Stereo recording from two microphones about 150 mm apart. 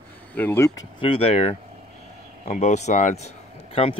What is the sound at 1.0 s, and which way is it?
Speech, 40° left (ahead or behind).